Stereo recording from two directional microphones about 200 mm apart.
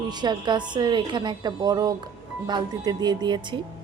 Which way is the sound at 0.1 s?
20° right (ahead or behind).